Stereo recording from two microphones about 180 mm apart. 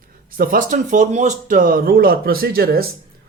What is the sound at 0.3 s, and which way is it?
Speech, 50° right (ahead or behind).